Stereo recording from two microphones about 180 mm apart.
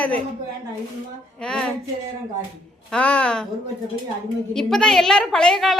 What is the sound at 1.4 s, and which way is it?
Speech, 5° left (ahead or behind).